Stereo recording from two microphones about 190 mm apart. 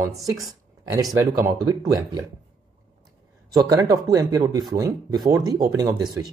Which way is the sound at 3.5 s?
20° right (ahead or behind).